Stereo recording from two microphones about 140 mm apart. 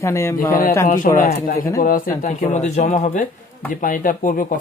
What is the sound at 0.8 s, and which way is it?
Speech, 70° left (ahead or behind).